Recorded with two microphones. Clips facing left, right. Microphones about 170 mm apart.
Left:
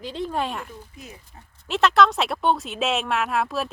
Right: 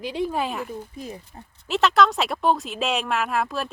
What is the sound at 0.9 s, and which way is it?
Speech, 35° right (ahead or behind).